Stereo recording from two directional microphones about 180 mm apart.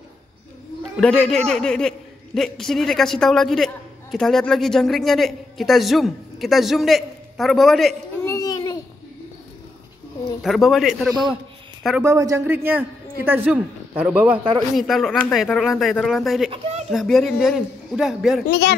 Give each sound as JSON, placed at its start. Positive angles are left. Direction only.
{"t": 1.0, "sound": "a man's voice", "side_deg": 5}
{"t": 8.2, "sound": "a sound", "side_deg": 20}
{"t": 10.4, "sound": "a man's voice", "side_deg": 0}
{"t": 12.0, "sound": "a man's voice", "side_deg": -20}
{"t": 16.4, "sound": "speech", "side_deg": -30}
{"t": 16.9, "sound": "a man's voice", "side_deg": 0}
{"t": 18.5, "sound": "speech", "side_deg": 65}